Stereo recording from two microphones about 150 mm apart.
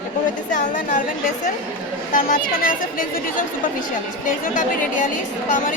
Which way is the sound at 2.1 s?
65° left (ahead or behind).